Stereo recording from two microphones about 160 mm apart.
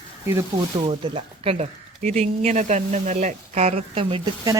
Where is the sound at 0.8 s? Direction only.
35° right (ahead or behind).